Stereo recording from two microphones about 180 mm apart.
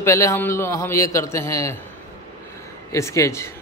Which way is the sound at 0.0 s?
15° left (ahead or behind).